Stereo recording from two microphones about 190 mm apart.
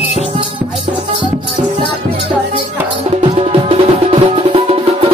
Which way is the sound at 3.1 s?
35° right (ahead or behind).